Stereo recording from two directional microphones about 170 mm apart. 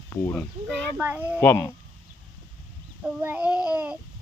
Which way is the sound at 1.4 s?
15° left (ahead or behind).